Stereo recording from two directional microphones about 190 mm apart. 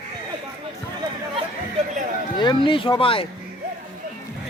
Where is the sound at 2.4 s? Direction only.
25° left (ahead or behind).